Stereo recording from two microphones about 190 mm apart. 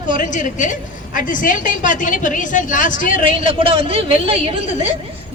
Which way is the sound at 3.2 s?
30° right (ahead or behind).